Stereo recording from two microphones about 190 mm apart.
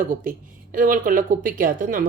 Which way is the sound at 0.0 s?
45° right (ahead or behind).